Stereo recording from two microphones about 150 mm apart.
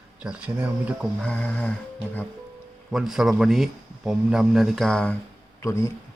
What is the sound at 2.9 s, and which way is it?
Speech, centre (ahead or behind).